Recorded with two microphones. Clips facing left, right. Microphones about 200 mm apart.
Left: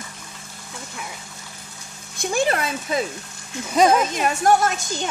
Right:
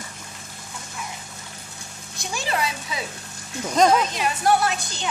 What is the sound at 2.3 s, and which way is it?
Speech, 55° left (ahead or behind).